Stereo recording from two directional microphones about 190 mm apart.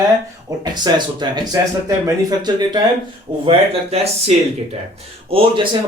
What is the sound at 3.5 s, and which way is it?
Speech, 35° right (ahead or behind).